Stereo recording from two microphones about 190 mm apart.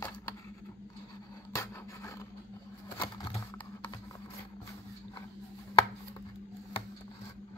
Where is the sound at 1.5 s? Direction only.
15° left (ahead or behind).